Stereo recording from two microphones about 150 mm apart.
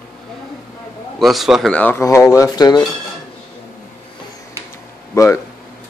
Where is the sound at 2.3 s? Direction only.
25° left (ahead or behind).